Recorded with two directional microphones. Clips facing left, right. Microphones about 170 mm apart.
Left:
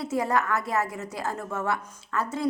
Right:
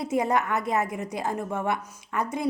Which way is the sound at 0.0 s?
20° right (ahead or behind).